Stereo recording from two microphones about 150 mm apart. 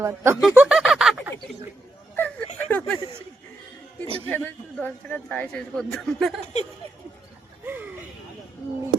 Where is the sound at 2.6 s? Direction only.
10° left (ahead or behind).